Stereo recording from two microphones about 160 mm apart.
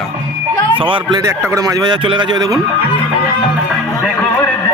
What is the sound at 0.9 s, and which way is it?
Speech, 25° right (ahead or behind).